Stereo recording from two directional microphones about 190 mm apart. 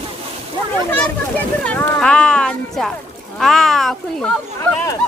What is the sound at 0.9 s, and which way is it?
Speech, 5° left (ahead or behind).